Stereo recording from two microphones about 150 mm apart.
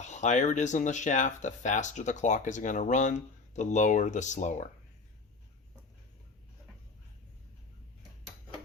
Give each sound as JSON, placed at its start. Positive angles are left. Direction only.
{"t": 0.0, "sound": "speech", "side_deg": 50}